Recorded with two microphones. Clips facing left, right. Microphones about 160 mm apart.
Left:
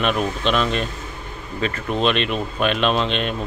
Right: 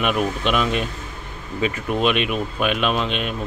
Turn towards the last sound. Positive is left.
turn(degrees=-5)  # may be behind; listen again after turning